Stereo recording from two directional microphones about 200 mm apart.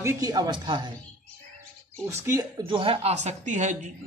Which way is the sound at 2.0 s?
15° right (ahead or behind).